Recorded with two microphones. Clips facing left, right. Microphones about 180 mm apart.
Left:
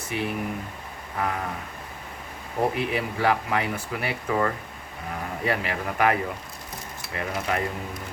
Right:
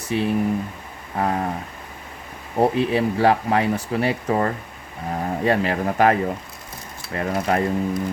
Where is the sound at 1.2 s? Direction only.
35° right (ahead or behind).